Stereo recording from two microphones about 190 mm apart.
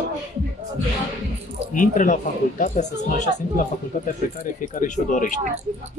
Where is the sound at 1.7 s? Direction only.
45° left (ahead or behind).